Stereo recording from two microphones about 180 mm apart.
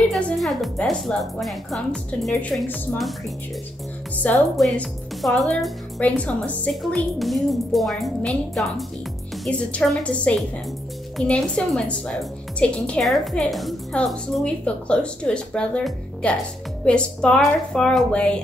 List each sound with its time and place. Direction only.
0.1 s a woman's voice: centre (ahead or behind)
4.2 s a woman's voice: 5° left (ahead or behind)